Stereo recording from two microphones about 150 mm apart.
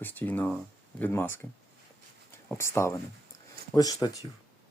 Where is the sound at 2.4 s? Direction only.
15° left (ahead or behind).